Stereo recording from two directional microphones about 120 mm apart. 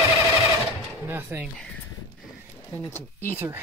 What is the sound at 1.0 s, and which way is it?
Speech, 15° right (ahead or behind).